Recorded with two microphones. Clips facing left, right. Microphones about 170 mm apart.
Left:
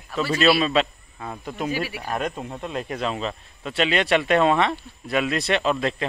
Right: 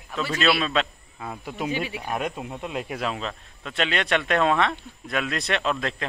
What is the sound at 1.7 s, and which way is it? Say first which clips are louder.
Speech: left 1 dB; 20° right (ahead or behind).